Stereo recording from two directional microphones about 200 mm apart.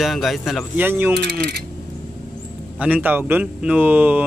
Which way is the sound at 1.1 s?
55° right (ahead or behind).